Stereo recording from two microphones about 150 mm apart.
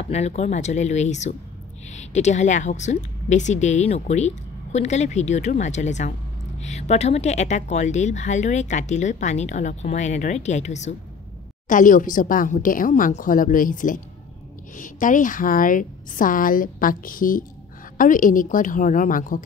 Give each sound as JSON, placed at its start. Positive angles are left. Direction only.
{"t": 0.0, "sound": "a woman's voice", "side_deg": 45}
{"t": 11.7, "sound": "a woman's voice", "side_deg": 60}